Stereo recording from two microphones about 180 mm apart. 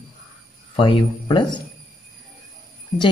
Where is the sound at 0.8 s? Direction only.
30° left (ahead or behind).